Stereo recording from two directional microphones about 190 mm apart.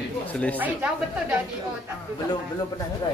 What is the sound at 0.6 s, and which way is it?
Speech, 10° right (ahead or behind).